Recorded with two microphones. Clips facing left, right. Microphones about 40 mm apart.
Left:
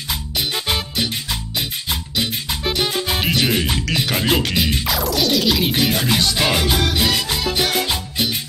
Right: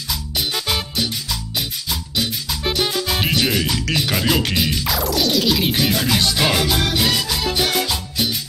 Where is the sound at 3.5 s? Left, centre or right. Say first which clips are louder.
Even; left.